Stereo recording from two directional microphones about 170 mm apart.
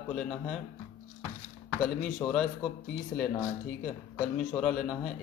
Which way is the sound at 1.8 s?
Centre (ahead or behind).